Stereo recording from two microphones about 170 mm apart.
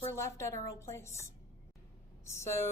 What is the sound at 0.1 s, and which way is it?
A woman's voice, 15° left (ahead or behind).